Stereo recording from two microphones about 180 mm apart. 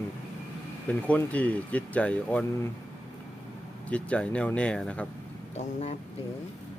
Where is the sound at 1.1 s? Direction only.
10° left (ahead or behind).